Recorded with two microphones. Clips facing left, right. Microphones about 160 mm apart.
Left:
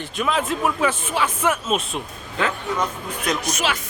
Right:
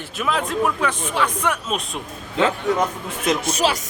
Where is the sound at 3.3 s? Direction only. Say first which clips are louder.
Right 4 dB; 25° right (ahead or behind).